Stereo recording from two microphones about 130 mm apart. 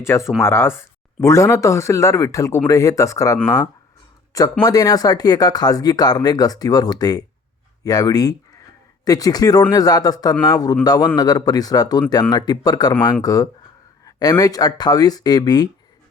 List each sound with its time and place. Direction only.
0.0 s speech: 20° left (ahead or behind)
4.6 s speech: 30° left (ahead or behind)